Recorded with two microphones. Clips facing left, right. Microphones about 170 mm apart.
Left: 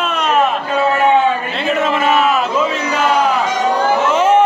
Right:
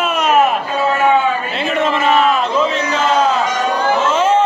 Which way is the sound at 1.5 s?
Centre (ahead or behind).